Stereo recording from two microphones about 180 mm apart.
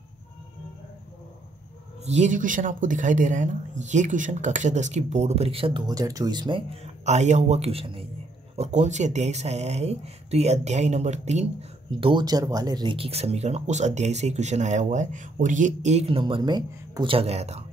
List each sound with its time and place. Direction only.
2.0 s speech: 40° right (ahead or behind)
12.0 s speech: 25° right (ahead or behind)